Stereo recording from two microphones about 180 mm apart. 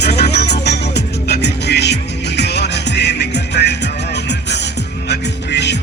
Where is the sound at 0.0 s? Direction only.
65° left (ahead or behind).